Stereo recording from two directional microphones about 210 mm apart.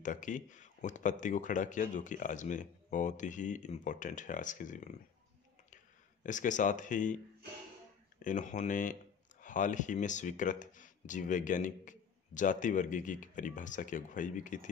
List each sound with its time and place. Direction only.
0.0 s speech: 35° left (ahead or behind)
6.2 s speech: 35° left (ahead or behind)
8.2 s speech: 35° left (ahead or behind)